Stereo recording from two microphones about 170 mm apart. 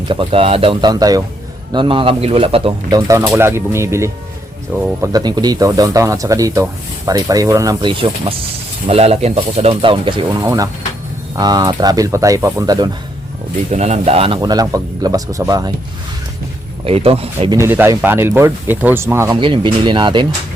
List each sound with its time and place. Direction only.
0.1 s speech: 30° right (ahead or behind)
2.9 s speech: 20° right (ahead or behind)
10.4 s speech: 20° right (ahead or behind)
13.7 s speech: 40° right (ahead or behind)
14.4 s speech: 20° right (ahead or behind)
16.8 s speech: 35° right (ahead or behind)
17.6 s speech: 15° right (ahead or behind)
19.4 s speech: 30° right (ahead or behind)